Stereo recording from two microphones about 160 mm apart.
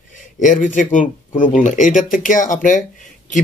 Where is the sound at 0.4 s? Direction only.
50° left (ahead or behind).